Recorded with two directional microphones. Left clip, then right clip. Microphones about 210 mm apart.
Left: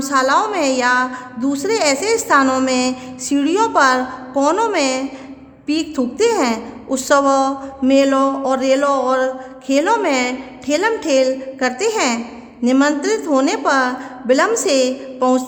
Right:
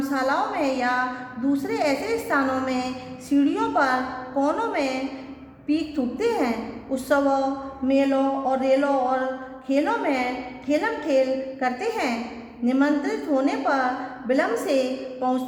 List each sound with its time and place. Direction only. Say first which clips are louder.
0.0 s a woman's voice: left 8 dB; 50° left (ahead or behind)